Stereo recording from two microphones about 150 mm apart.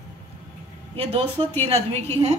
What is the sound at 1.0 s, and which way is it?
A woman's voice, 40° right (ahead or behind).